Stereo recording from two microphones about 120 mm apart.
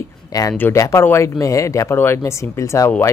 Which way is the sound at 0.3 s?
30° left (ahead or behind).